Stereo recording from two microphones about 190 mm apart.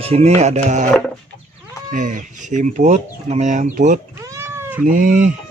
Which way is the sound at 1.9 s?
45° right (ahead or behind).